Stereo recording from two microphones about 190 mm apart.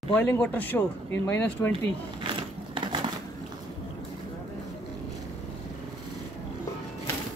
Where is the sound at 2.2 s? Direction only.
25° right (ahead or behind).